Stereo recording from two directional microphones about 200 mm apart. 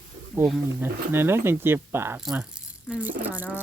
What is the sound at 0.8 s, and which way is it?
Speech, 10° right (ahead or behind).